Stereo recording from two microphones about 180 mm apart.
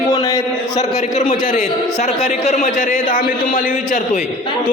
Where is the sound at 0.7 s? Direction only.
40° left (ahead or behind).